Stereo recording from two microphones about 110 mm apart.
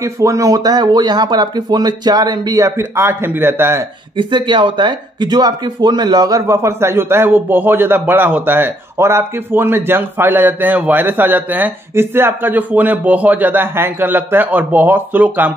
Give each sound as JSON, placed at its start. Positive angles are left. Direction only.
{"t": 0.0, "sound": "speech", "side_deg": -30}
{"t": 2.8, "sound": "speech", "side_deg": -20}
{"t": 4.2, "sound": "speech", "side_deg": -45}